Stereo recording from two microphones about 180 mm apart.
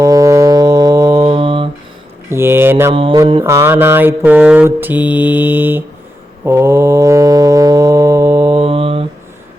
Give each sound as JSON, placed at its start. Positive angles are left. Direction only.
{"t": 0.0, "sound": "music", "side_deg": -20}
{"t": 1.2, "sound": "mantra", "side_deg": -30}
{"t": 2.3, "sound": "mantra", "side_deg": -15}
{"t": 2.9, "sound": "mantra", "side_deg": -30}
{"t": 3.4, "sound": "mantra", "side_deg": -15}
{"t": 6.4, "sound": "music", "side_deg": -15}
{"t": 8.5, "sound": "mantra", "side_deg": -30}